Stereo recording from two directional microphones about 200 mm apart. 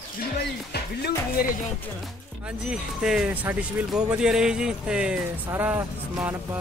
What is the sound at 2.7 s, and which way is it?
Speech, 5° right (ahead or behind).